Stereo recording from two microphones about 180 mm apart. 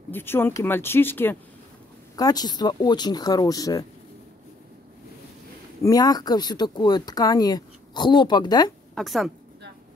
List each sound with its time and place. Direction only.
0.1 s speech: 10° left (ahead or behind)
5.8 s speech: 20° left (ahead or behind)
8.9 s speech: centre (ahead or behind)